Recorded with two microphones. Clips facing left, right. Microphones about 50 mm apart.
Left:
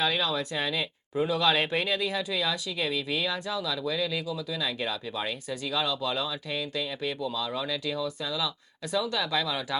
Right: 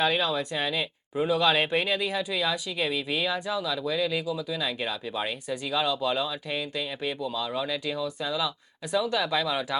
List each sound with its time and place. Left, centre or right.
0.0 s a woman's voice: right
0.5 s speech: centre